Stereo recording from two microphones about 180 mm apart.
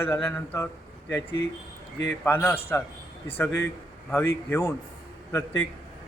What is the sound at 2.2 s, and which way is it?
A man's voice, 10° left (ahead or behind).